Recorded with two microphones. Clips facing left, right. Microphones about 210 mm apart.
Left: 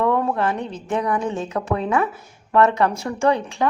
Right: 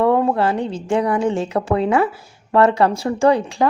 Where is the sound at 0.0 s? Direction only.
30° right (ahead or behind).